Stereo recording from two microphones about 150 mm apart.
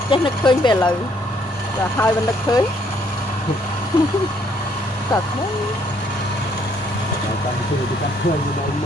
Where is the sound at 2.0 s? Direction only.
25° left (ahead or behind).